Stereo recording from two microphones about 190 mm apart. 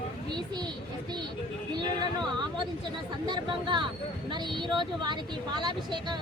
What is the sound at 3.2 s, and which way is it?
Speech, 25° right (ahead or behind).